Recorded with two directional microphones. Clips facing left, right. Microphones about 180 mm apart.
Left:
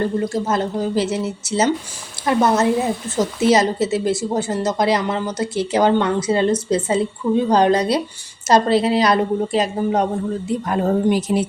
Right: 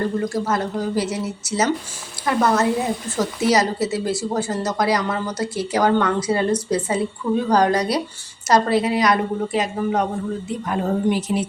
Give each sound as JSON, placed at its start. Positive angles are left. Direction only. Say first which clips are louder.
{"t": 0.3, "sound": "a woman's voice", "louder": "left 2 dB", "side_deg": 25}